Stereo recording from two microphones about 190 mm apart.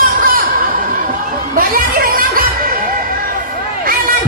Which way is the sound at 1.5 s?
50° right (ahead or behind).